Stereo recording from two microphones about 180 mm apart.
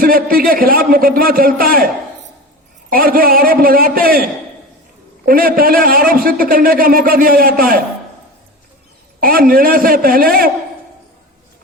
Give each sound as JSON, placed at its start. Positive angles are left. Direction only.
{"t": 0.0, "sound": "a man's voice", "side_deg": -55}
{"t": 2.9, "sound": "a man's voice", "side_deg": -55}
{"t": 9.2, "sound": "a man's voice", "side_deg": -55}